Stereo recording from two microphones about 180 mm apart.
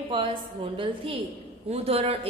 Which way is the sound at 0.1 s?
30° right (ahead or behind).